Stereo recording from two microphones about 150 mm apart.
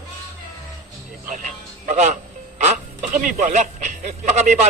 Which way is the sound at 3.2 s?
60° right (ahead or behind).